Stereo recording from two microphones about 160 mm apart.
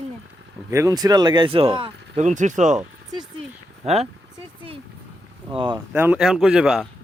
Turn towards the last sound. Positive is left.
turn(degrees=-5)  # may be behind; listen again after turning